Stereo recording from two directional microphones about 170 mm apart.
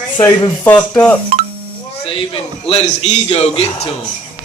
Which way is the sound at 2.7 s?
35° left (ahead or behind).